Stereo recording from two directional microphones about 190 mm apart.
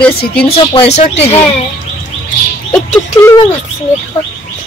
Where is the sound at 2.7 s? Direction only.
15° left (ahead or behind).